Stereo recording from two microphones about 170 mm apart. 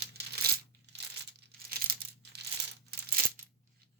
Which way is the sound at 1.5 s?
60° right (ahead or behind).